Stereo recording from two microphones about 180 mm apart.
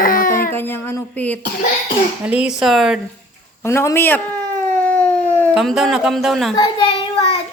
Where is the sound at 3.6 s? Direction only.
15° left (ahead or behind).